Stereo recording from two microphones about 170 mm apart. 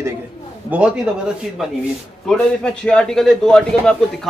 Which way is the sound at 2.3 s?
5° left (ahead or behind).